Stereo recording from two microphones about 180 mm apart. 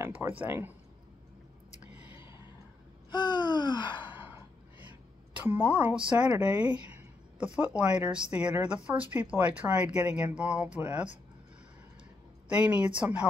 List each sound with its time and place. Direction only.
0.0 s speech: 10° right (ahead or behind)
2.0 s a sound: 15° right (ahead or behind)
3.1 s gasp: 25° left (ahead or behind)
4.1 s sigh: 10° right (ahead or behind)
5.4 s a woman's voice: 10° right (ahead or behind)
12.4 s speech: 5° right (ahead or behind)